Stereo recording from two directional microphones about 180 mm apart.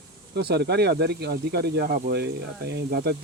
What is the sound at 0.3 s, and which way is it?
Speech, 65° right (ahead or behind).